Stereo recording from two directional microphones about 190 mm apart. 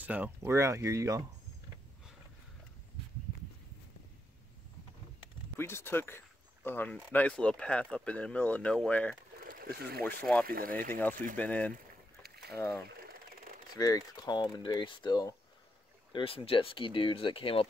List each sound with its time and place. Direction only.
0.0 s speech: 10° right (ahead or behind)
5.6 s speech: 10° left (ahead or behind)
9.4 s boat: 50° right (ahead or behind)
10.0 s speech: 5° left (ahead or behind)
10.4 s speech: 50° right (ahead or behind)
11.3 s speech: 5° left (ahead or behind)
11.7 s boat: 55° right (ahead or behind)
13.7 s speech: 20° left (ahead or behind)